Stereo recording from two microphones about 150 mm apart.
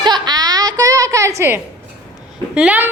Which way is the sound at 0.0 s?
30° right (ahead or behind).